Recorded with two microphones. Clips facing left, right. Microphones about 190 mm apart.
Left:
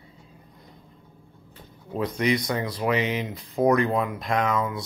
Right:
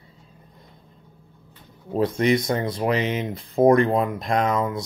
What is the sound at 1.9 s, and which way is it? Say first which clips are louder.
Speech: right 4 dB; 25° right (ahead or behind).